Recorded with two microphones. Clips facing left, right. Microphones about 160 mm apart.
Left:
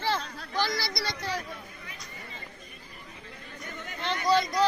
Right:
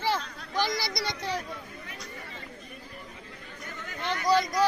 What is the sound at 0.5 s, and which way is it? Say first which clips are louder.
Speech: right 1 dB; 15° right (ahead or behind).